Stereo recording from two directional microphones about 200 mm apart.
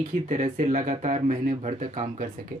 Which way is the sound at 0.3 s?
40° right (ahead or behind).